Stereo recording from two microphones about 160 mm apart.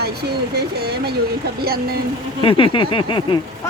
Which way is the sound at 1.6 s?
70° right (ahead or behind).